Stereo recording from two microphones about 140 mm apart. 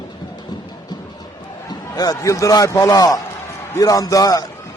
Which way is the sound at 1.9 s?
25° left (ahead or behind).